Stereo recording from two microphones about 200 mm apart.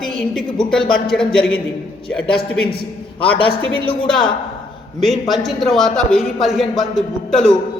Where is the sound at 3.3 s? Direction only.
25° left (ahead or behind).